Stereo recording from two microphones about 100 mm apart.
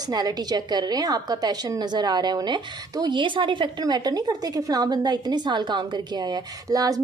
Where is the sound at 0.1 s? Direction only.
40° right (ahead or behind).